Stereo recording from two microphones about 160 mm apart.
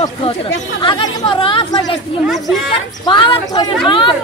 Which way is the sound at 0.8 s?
30° left (ahead or behind).